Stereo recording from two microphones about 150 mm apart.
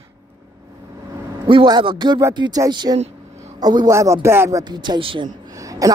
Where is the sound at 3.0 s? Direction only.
45° right (ahead or behind).